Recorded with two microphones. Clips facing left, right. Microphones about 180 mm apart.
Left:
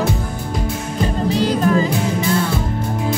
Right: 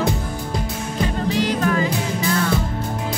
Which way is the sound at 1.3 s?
35° left (ahead or behind).